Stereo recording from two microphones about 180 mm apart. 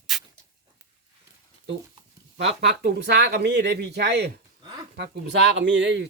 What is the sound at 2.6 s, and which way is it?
Speech, 70° right (ahead or behind).